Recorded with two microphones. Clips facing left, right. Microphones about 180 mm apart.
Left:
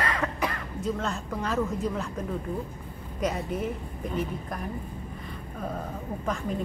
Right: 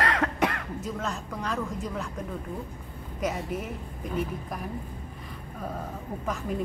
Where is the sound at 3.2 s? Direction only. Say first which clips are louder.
Left 1 dB; centre (ahead or behind).